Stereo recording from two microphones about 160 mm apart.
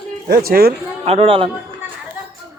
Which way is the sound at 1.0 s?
35° right (ahead or behind).